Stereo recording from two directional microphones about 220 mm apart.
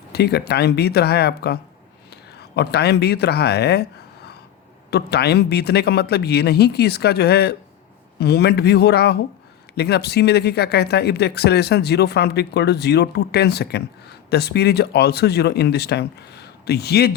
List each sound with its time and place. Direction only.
0.1 s speech: 45° left (ahead or behind)
2.6 s speech: 50° left (ahead or behind)
4.9 s speech: 45° left (ahead or behind)